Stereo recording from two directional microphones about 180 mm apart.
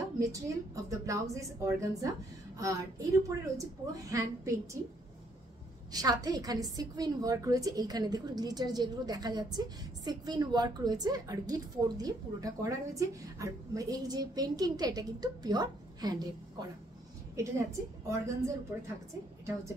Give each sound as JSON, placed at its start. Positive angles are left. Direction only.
{"t": 0.2, "sound": "a woman's voice", "side_deg": -20}
{"t": 5.9, "sound": "a woman's voice", "side_deg": -20}